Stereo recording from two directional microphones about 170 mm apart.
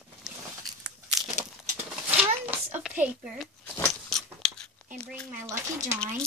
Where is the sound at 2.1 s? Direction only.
10° right (ahead or behind).